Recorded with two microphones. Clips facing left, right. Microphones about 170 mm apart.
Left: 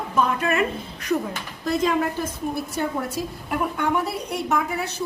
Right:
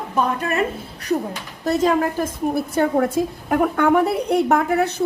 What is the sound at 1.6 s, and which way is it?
Speech, 40° right (ahead or behind).